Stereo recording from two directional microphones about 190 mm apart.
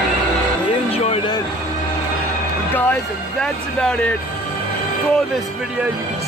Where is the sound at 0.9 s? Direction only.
30° left (ahead or behind).